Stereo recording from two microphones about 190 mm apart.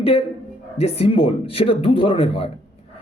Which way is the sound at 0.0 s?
30° left (ahead or behind).